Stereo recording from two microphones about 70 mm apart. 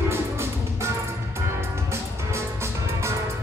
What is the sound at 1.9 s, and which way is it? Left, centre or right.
Music, right.